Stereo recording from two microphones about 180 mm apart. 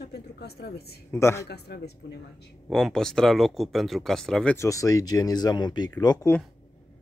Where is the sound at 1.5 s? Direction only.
65° left (ahead or behind).